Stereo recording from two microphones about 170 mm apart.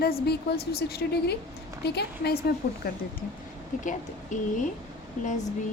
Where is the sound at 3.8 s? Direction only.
50° left (ahead or behind).